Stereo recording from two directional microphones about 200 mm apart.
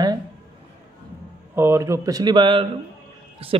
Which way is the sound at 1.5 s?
10° right (ahead or behind).